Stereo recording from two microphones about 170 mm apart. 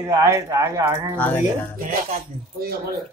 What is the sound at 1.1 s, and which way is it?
Speech, 10° left (ahead or behind).